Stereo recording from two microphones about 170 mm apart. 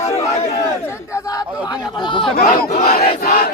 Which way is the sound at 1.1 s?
20° left (ahead or behind).